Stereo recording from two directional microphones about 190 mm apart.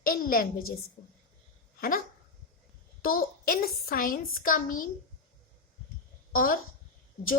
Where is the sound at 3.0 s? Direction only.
50° left (ahead or behind).